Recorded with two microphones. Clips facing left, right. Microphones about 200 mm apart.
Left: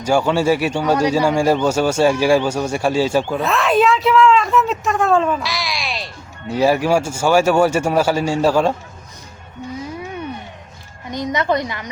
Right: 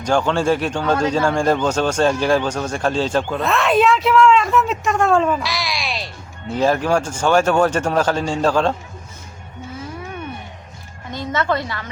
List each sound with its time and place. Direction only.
0.0 s a man's voice: 10° left (ahead or behind)
11.1 s a man's voice: 15° left (ahead or behind)